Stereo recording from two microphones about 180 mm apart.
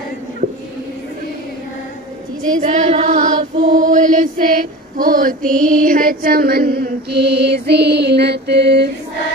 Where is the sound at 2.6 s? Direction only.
40° right (ahead or behind).